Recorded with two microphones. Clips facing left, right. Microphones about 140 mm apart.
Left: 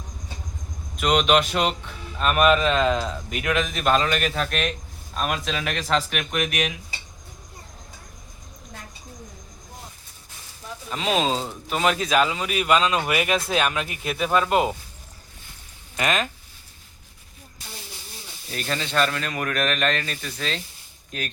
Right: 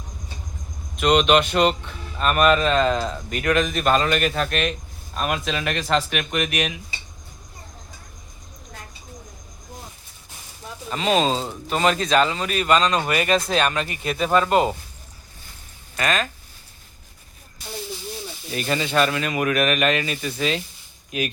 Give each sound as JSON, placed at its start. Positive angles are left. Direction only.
{"t": 0.9, "sound": "speech", "side_deg": 0}
{"t": 10.8, "sound": "speech", "side_deg": 0}
{"t": 16.0, "sound": "speech", "side_deg": 20}
{"t": 18.5, "sound": "speech", "side_deg": -5}